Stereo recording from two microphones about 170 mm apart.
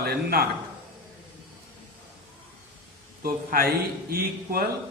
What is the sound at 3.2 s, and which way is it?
A man's voice, 60° right (ahead or behind).